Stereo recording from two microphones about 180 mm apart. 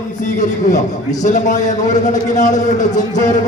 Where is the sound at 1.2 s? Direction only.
40° left (ahead or behind).